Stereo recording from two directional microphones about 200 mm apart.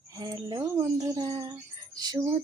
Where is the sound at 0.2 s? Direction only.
20° right (ahead or behind).